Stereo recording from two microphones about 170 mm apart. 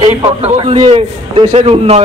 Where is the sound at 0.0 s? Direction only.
30° right (ahead or behind).